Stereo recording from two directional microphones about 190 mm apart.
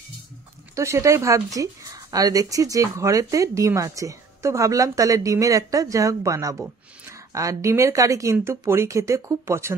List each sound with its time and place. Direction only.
0.7 s speech: 15° right (ahead or behind)